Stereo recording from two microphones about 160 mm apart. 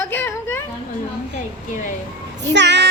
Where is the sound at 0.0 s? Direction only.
15° left (ahead or behind).